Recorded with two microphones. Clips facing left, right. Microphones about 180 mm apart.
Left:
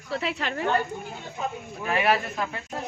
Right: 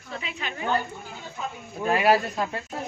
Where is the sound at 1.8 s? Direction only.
35° right (ahead or behind).